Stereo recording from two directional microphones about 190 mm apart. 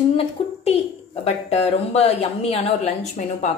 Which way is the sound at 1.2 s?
35° left (ahead or behind).